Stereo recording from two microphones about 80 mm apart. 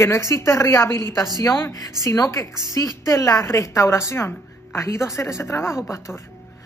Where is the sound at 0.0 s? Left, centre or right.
Left.